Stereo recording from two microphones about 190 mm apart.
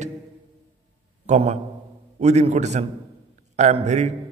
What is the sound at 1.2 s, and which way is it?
A man's voice, 35° right (ahead or behind).